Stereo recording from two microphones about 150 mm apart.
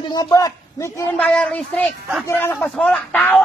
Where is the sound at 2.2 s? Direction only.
15° left (ahead or behind).